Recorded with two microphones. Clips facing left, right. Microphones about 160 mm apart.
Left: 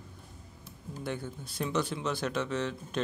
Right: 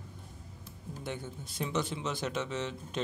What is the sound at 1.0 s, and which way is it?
Speech, 20° right (ahead or behind).